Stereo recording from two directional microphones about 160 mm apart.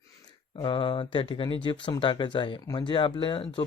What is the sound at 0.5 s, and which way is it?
Speech, 30° left (ahead or behind).